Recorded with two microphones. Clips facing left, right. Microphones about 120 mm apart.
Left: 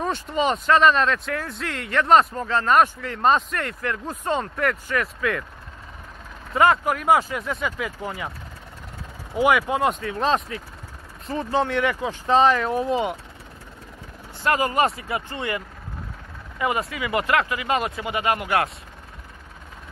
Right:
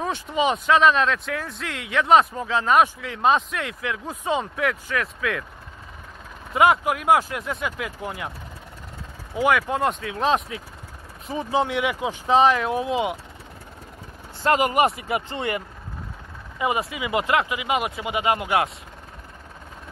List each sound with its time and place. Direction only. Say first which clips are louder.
0.0 s speech: even; 5° right (ahead or behind)
6.5 s speech: even; 10° right (ahead or behind)
9.3 s speech: left 1 dB; 5° left (ahead or behind)
14.4 s speech: right 2 dB; 20° right (ahead or behind)